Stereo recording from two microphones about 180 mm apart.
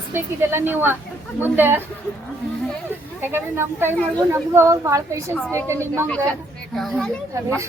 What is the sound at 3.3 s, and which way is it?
A woman's voice, 15° right (ahead or behind).